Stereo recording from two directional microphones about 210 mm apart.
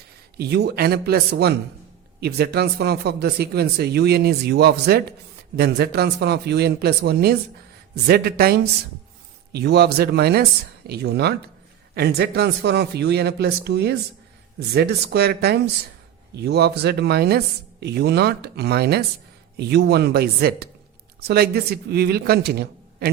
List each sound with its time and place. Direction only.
0.3 s speech: 50° right (ahead or behind)